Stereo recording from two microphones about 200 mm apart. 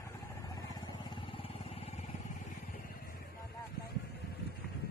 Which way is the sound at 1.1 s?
30° left (ahead or behind).